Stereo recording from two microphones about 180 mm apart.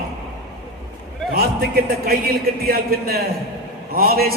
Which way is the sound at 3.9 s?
60° right (ahead or behind).